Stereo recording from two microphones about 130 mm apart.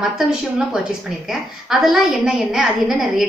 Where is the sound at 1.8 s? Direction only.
5° right (ahead or behind).